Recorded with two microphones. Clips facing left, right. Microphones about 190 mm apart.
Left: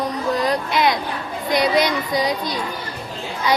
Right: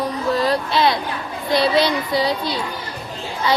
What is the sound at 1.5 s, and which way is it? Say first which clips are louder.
Speech: right 1 dB; 20° left (ahead or behind).